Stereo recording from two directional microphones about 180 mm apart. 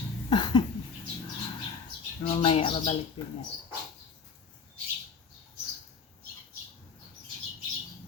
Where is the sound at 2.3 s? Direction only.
30° left (ahead or behind).